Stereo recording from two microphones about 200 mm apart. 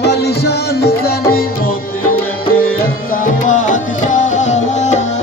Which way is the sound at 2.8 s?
45° left (ahead or behind).